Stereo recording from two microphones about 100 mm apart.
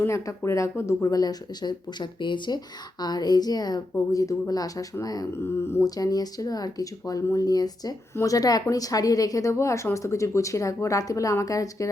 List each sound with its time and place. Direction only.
0.0 s speech: 30° left (ahead or behind)